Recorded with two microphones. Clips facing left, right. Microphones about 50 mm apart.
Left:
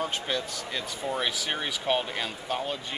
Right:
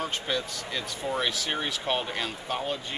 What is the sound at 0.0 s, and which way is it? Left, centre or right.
Speech, centre.